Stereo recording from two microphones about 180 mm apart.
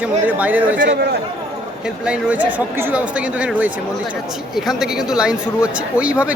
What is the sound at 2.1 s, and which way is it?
Speech, 10° right (ahead or behind).